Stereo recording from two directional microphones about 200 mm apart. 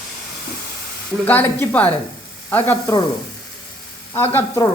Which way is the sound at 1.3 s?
10° left (ahead or behind).